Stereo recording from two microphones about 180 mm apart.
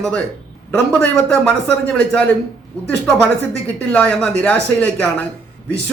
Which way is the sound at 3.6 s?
5° left (ahead or behind).